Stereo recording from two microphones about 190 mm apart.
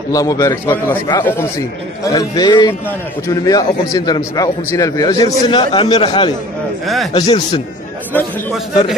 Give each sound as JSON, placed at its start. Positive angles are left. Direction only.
{"t": 0.1, "sound": "a man's voice", "side_deg": 15}
{"t": 8.1, "sound": "a man's voice", "side_deg": 10}